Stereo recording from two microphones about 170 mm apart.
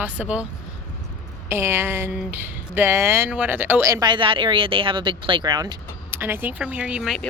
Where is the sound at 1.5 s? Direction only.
15° right (ahead or behind).